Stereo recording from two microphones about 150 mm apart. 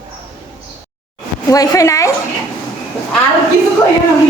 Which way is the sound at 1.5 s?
25° left (ahead or behind).